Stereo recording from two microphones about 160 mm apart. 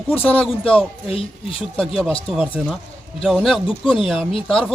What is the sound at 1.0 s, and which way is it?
Speech, 35° left (ahead or behind).